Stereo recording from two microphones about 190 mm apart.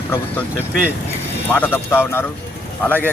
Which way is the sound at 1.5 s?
10° left (ahead or behind).